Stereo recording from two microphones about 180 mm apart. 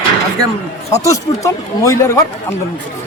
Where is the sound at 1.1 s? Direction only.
15° left (ahead or behind).